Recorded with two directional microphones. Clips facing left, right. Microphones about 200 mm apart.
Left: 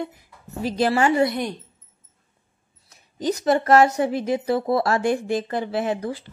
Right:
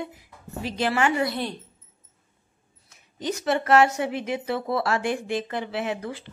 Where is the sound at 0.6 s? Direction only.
40° left (ahead or behind).